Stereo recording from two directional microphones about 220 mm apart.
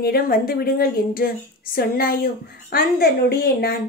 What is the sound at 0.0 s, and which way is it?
A woman's voice, 40° left (ahead or behind).